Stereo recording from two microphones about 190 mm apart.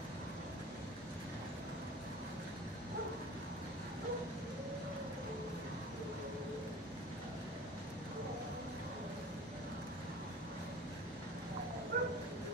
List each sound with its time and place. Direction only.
11.9 s bow-wow: 50° right (ahead or behind)